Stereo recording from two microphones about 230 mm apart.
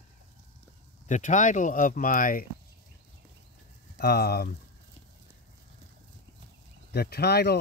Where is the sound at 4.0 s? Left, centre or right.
Left.